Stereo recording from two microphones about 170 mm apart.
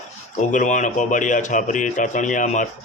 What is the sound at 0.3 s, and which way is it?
Speech, 45° left (ahead or behind).